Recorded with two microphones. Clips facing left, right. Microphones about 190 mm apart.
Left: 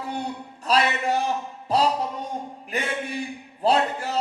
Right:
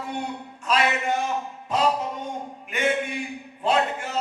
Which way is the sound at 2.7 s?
35° left (ahead or behind).